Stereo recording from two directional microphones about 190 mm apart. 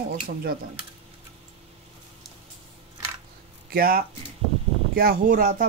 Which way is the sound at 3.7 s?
50° right (ahead or behind).